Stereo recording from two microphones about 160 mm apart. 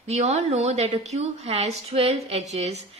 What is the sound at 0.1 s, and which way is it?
Speech, 45° right (ahead or behind).